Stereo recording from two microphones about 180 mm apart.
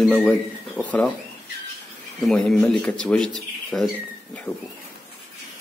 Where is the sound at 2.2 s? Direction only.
5° left (ahead or behind).